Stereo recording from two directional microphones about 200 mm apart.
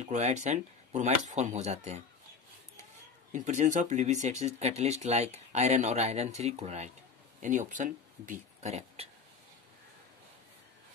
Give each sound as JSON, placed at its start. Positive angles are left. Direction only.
{"t": 0.1, "sound": "speech", "side_deg": -35}
{"t": 3.3, "sound": "speech", "side_deg": -35}